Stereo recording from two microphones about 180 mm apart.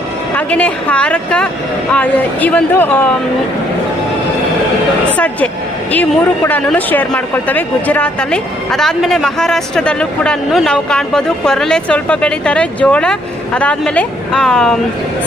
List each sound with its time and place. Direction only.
0.3 s speech: 10° left (ahead or behind)
5.1 s speech: 10° left (ahead or behind)